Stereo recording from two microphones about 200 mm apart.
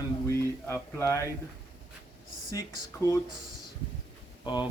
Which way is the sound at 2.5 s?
15° left (ahead or behind).